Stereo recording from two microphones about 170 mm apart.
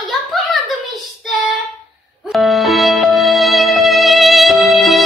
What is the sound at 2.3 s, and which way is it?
Music, centre (ahead or behind).